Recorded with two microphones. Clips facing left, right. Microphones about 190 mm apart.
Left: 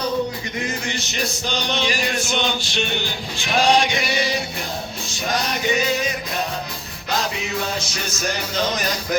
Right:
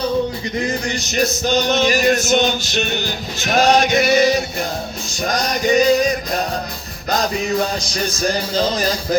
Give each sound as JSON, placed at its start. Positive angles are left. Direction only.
{"t": 0.9, "sound": "music", "side_deg": -40}
{"t": 1.5, "sound": "male singing", "side_deg": -45}
{"t": 5.2, "sound": "music", "side_deg": -40}